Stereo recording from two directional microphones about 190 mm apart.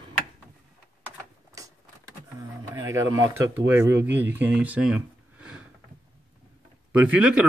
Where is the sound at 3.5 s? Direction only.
10° right (ahead or behind).